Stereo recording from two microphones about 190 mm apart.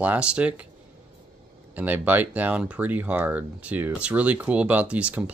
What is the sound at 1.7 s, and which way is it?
Speech, 10° right (ahead or behind).